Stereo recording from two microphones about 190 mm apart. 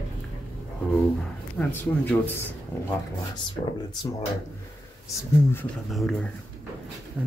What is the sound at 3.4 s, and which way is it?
Speech, 25° left (ahead or behind).